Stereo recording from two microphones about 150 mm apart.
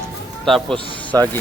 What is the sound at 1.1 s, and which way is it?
Speech, 25° right (ahead or behind).